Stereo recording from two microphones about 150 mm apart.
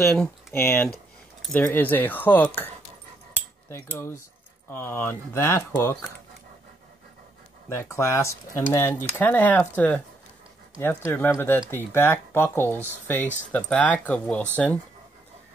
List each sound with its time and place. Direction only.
0.5 s speech: 15° left (ahead or behind)
3.6 s cutlery: 20° left (ahead or behind)
4.6 s speech: 15° left (ahead or behind)
7.7 s speech: 20° left (ahead or behind)
11.1 s speech: 15° left (ahead or behind)